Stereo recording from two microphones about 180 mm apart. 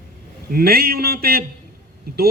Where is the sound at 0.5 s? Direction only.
55° right (ahead or behind).